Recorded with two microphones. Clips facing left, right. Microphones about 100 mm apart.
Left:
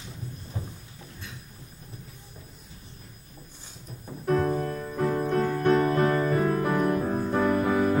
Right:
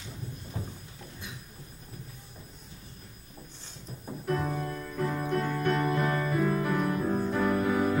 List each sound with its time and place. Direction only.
0.5 s a sound: 20° left (ahead or behind)
4.3 s music: 40° left (ahead or behind)
7.0 s music: 30° left (ahead or behind)